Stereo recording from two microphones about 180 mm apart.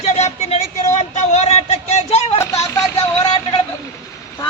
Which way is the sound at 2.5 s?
20° left (ahead or behind).